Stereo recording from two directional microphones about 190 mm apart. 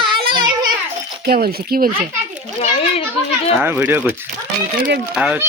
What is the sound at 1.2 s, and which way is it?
Speech, 55° right (ahead or behind).